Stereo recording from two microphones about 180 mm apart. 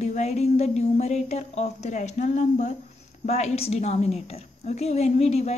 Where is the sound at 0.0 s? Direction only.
40° left (ahead or behind).